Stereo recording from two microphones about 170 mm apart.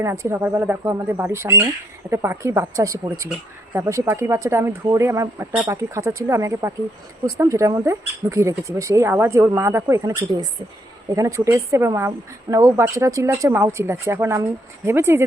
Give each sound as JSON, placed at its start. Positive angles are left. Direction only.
{"t": 0.0, "sound": "speech", "side_deg": -15}